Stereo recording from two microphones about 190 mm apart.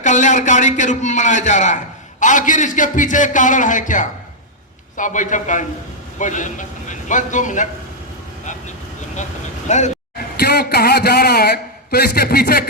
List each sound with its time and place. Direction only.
0.0 s a man's voice: 40° left (ahead or behind)
9.6 s a man's voice: 40° left (ahead or behind)
10.3 s a man's voice: 55° left (ahead or behind)